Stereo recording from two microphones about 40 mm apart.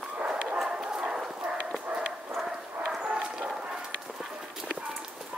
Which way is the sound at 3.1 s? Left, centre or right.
Centre.